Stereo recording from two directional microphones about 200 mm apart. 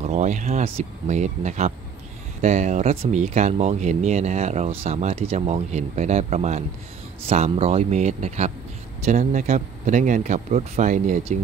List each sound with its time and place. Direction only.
0.0 s speech: 35° right (ahead or behind)